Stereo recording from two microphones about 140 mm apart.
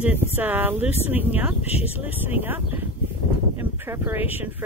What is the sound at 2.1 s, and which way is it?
Speech, 15° right (ahead or behind).